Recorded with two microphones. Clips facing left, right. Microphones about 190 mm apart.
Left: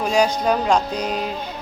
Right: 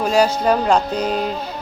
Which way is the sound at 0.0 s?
5° right (ahead or behind).